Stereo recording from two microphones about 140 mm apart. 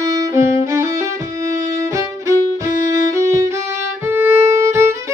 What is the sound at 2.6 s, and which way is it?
Music, 20° right (ahead or behind).